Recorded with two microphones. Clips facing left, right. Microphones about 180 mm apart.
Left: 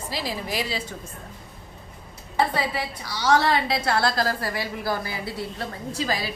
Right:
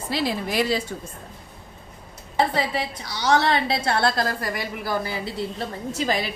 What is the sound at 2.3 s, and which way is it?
A woman's voice, 25° right (ahead or behind).